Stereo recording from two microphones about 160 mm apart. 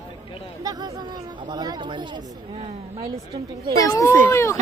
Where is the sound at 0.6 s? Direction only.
25° right (ahead or behind).